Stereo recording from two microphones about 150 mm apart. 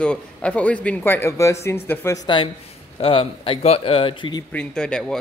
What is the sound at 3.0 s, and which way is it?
Speech, 35° left (ahead or behind).